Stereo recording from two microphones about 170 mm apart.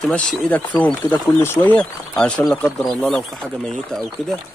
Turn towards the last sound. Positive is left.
turn(degrees=0)  # may be behind; listen again after turning